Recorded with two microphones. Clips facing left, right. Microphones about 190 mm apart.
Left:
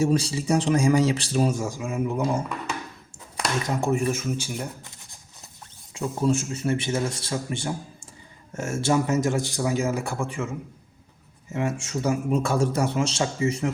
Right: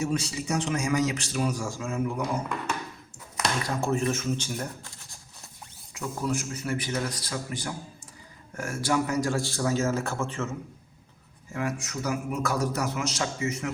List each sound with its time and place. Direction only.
0.0 s a man's voice: 30° left (ahead or behind)
3.7 s a man's voice: 15° left (ahead or behind)
5.9 s a man's voice: 25° left (ahead or behind); by 10.5 s 10° left (ahead or behind)
11.5 s a man's voice: 25° left (ahead or behind)